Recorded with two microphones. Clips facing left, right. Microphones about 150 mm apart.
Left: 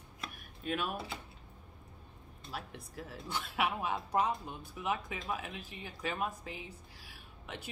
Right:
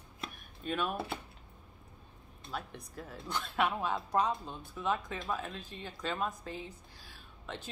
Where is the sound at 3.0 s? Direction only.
5° left (ahead or behind).